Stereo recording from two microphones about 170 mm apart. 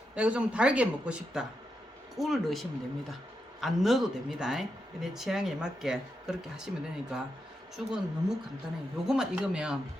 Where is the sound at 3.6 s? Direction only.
Centre (ahead or behind).